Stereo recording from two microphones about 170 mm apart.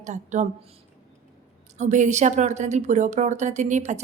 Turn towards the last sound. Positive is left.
turn(degrees=-45)  # may be behind; listen again after turning